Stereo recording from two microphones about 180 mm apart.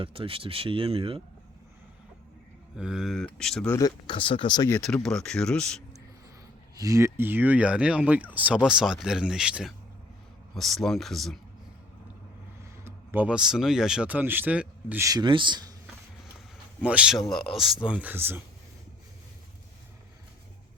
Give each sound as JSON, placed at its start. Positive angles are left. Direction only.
{"t": 0.0, "sound": "speech", "side_deg": -30}
{"t": 2.7, "sound": "speech", "side_deg": -5}
{"t": 3.8, "sound": "speech", "side_deg": 25}
{"t": 4.7, "sound": "speech", "side_deg": 5}
{"t": 6.7, "sound": "speech", "side_deg": -20}
{"t": 12.8, "sound": "speech", "side_deg": -10}
{"t": 16.8, "sound": "speech", "side_deg": -5}